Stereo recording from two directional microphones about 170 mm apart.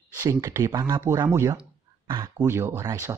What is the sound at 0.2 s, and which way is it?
Speech, 20° right (ahead or behind).